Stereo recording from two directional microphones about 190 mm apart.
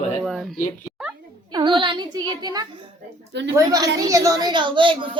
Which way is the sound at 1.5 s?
25° right (ahead or behind).